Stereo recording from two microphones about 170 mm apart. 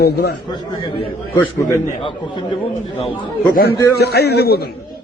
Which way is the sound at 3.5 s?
60° left (ahead or behind).